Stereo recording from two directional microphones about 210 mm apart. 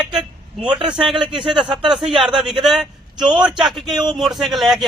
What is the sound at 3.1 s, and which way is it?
Speech, 20° right (ahead or behind).